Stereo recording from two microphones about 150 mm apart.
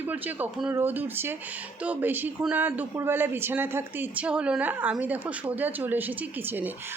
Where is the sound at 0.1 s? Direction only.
10° right (ahead or behind).